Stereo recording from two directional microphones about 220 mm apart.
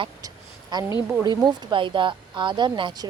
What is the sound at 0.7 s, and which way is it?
Speech, 20° right (ahead or behind).